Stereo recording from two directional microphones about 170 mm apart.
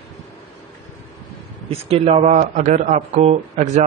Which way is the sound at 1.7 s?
35° right (ahead or behind).